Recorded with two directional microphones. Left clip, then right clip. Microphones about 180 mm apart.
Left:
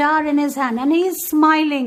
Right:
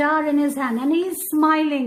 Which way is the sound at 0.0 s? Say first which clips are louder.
Left 2 dB; 25° left (ahead or behind).